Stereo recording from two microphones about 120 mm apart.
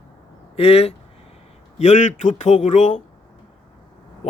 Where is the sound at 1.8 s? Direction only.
75° left (ahead or behind).